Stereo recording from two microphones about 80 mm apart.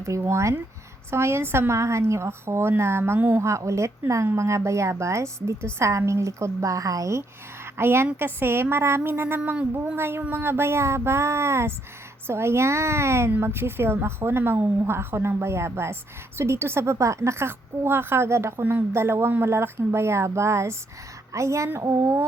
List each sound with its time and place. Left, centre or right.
0.0 s a woman's voice: right
8.2 s a sound: right
9.7 s a woman's voice: right